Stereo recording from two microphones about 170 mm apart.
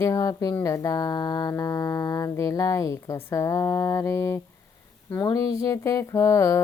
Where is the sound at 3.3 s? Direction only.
15° left (ahead or behind).